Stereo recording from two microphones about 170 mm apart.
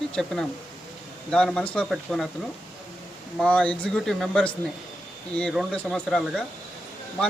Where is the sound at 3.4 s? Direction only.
5° left (ahead or behind).